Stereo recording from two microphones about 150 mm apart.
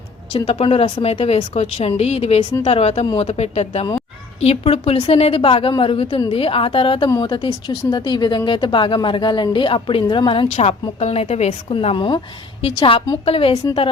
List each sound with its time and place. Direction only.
0.3 s a woman's voice: 40° left (ahead or behind)
10.5 s a woman's voice: 45° left (ahead or behind)